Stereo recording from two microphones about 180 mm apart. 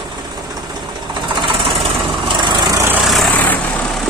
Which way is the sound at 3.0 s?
Centre (ahead or behind).